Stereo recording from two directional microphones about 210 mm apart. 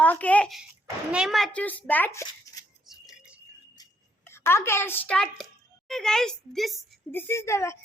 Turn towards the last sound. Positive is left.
turn(degrees=15)  # may be behind; listen again after turning